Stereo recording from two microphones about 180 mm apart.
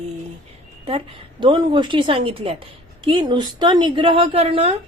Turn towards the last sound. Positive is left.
turn(degrees=-35)  # may be behind; listen again after turning